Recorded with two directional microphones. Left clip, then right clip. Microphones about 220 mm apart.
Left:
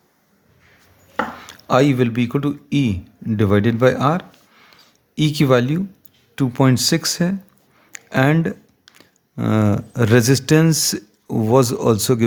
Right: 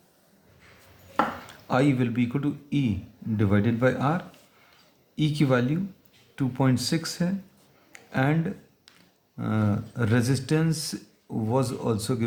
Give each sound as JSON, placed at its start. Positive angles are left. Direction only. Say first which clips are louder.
{"t": 1.5, "sound": "a man's voice", "louder": "left 8 dB", "side_deg": 45}